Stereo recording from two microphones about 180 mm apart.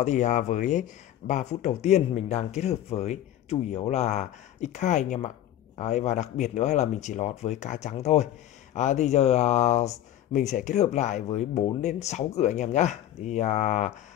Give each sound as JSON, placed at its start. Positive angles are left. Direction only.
{"t": 0.0, "sound": "speech", "side_deg": 40}